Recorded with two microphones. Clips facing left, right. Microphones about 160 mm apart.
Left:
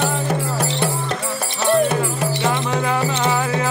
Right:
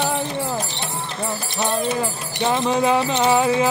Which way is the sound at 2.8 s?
20° right (ahead or behind).